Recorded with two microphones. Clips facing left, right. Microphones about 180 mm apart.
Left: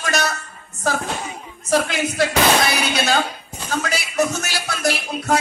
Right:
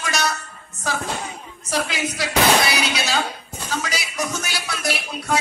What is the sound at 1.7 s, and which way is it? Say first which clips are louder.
Speech: left 5 dB; 45° left (ahead or behind).